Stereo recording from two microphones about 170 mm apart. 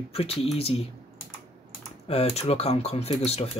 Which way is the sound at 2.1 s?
40° left (ahead or behind).